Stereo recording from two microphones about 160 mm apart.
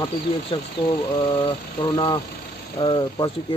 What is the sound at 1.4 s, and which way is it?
Speech, 30° left (ahead or behind).